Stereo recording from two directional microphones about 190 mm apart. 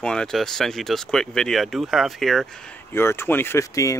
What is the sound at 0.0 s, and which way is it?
Speech, 5° left (ahead or behind).